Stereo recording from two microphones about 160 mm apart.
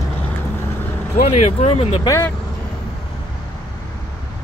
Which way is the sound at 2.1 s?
15° left (ahead or behind).